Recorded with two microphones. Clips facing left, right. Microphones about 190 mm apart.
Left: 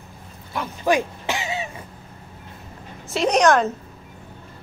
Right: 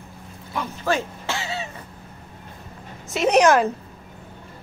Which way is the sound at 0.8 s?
15° left (ahead or behind).